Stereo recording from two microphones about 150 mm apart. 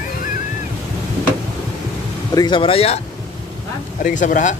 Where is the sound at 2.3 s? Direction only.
30° left (ahead or behind).